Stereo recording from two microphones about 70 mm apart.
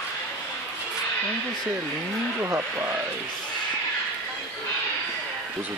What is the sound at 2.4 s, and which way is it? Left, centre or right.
Speech, right.